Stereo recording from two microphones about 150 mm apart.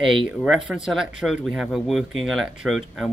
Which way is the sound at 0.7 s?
5° right (ahead or behind).